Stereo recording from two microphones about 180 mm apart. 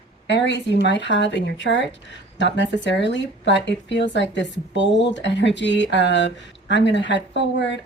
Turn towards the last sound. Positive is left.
turn(degrees=85)